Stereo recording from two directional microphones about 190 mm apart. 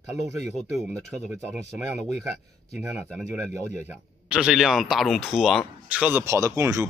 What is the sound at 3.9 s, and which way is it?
Speech, 5° right (ahead or behind).